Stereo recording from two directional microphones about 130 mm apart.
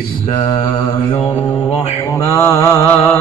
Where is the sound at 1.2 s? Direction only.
55° left (ahead or behind).